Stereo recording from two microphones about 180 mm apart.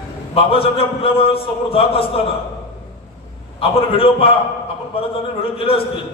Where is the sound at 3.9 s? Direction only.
30° left (ahead or behind).